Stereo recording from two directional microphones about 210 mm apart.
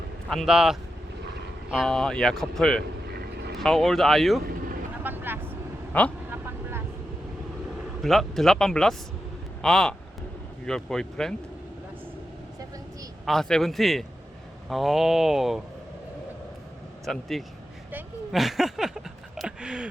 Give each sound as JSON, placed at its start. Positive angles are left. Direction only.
{"t": 0.3, "sound": "speech", "side_deg": 0}
{"t": 3.1, "sound": "vehicle", "side_deg": -50}
{"t": 3.6, "sound": "speech", "side_deg": 0}
{"t": 4.4, "sound": "vehicle", "side_deg": -45}
{"t": 5.0, "sound": "vehicle", "side_deg": -10}
{"t": 5.9, "sound": "a man's voice", "side_deg": 5}
{"t": 6.3, "sound": "vehicle", "side_deg": -10}
{"t": 8.0, "sound": "speech", "side_deg": 0}
{"t": 13.2, "sound": "speech", "side_deg": 0}
{"t": 17.1, "sound": "speech", "side_deg": 0}
{"t": 17.9, "sound": "a sound", "side_deg": 0}